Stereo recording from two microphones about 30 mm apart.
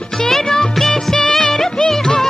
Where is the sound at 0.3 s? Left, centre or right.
Centre.